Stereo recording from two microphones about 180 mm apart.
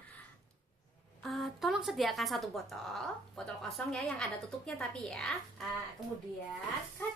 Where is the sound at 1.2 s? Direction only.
Centre (ahead or behind).